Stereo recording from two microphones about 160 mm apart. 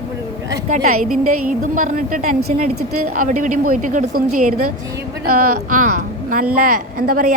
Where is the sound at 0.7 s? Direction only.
60° right (ahead or behind).